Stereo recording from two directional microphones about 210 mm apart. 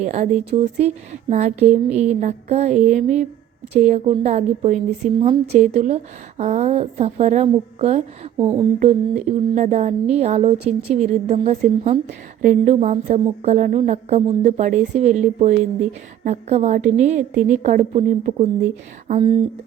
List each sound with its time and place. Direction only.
0.0 s a woman's voice: 35° right (ahead or behind)
19.2 s speech: 20° right (ahead or behind)